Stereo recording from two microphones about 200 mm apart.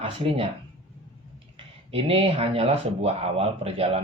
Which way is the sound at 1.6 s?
30° right (ahead or behind).